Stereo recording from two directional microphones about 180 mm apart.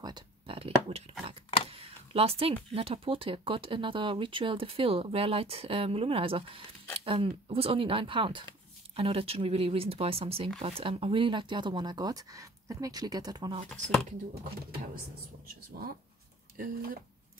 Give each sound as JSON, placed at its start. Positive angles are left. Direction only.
{"t": 0.0, "sound": "a sound", "side_deg": -25}
{"t": 2.7, "sound": "speech", "side_deg": -30}
{"t": 15.4, "sound": "speech", "side_deg": -55}